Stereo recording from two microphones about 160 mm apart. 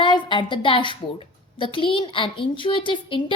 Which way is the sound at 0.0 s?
30° left (ahead or behind).